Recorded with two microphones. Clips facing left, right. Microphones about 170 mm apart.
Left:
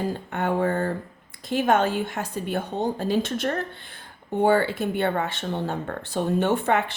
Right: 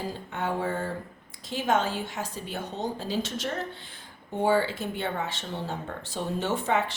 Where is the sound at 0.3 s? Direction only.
55° left (ahead or behind).